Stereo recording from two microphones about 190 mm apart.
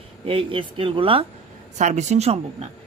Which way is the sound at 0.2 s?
30° right (ahead or behind).